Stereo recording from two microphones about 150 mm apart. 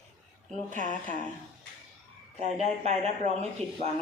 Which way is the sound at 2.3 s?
50° right (ahead or behind).